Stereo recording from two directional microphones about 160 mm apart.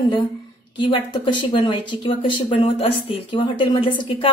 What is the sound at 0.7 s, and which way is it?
Speech, 30° left (ahead or behind).